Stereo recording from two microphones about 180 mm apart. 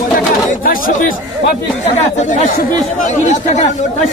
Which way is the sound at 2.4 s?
45° left (ahead or behind).